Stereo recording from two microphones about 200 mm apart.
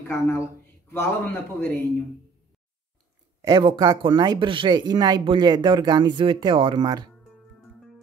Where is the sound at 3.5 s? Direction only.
20° right (ahead or behind).